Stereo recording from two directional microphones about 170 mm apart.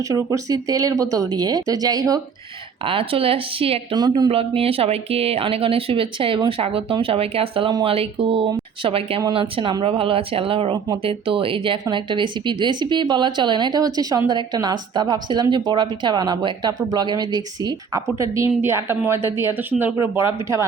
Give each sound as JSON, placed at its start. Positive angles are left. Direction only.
{"t": 0.1, "sound": "speech", "side_deg": -20}
{"t": 2.8, "sound": "speech", "side_deg": -30}